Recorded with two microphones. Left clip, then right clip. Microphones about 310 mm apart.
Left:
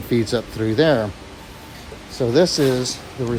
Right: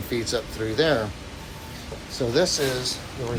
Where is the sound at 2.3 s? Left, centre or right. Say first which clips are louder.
Left 6 dB; left.